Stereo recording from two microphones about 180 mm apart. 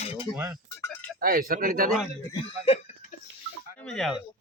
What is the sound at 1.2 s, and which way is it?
Speech, 55° right (ahead or behind).